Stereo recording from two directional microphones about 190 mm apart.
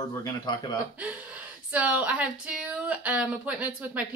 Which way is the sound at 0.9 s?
5° right (ahead or behind).